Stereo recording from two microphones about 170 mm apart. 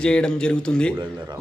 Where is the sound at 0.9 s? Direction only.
25° right (ahead or behind).